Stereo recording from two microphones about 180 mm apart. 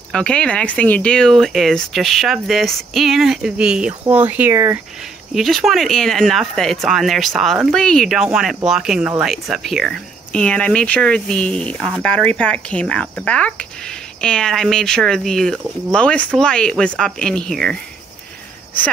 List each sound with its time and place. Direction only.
0.1 s speech: 5° left (ahead or behind); by 4.7 s 15° right (ahead or behind)
5.3 s speech: centre (ahead or behind)